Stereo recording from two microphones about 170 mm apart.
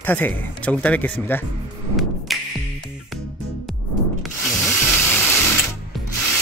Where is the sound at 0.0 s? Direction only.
10° left (ahead or behind).